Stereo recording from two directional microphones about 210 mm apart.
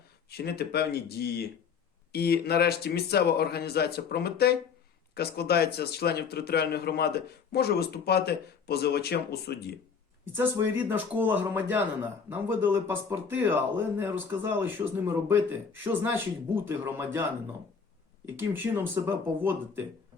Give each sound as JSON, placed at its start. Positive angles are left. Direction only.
{"t": 0.3, "sound": "speech", "side_deg": 50}
{"t": 10.3, "sound": "speech", "side_deg": -10}
{"t": 18.3, "sound": "speech", "side_deg": -10}